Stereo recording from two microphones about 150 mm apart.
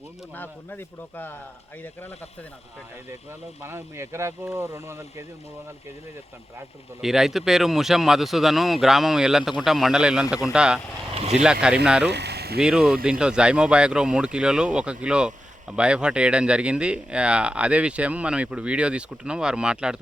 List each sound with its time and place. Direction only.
0.3 s speech: 10° left (ahead or behind)
3.6 s speech: 15° right (ahead or behind)
7.0 s speech: centre (ahead or behind)
11.1 s speech: 45° right (ahead or behind)
12.0 s speech: 90° right
12.5 s speech: 5° right (ahead or behind)